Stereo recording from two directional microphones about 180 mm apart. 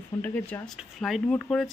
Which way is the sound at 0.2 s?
10° left (ahead or behind).